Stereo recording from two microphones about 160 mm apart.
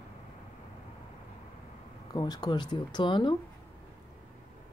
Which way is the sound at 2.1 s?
25° left (ahead or behind).